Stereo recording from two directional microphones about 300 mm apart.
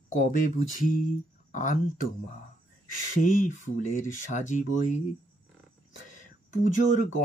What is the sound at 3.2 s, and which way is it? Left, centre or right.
Speech, left.